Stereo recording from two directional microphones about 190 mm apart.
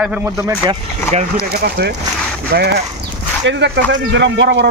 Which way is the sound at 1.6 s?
60° right (ahead or behind).